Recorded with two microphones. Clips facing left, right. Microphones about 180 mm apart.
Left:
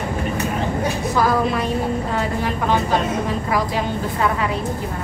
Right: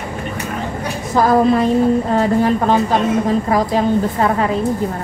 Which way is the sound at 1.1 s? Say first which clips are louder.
Right 8 dB; 45° right (ahead or behind).